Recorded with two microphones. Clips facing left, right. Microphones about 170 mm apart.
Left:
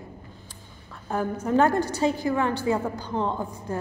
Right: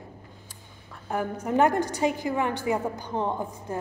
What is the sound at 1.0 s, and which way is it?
A man's voice, 15° right (ahead or behind).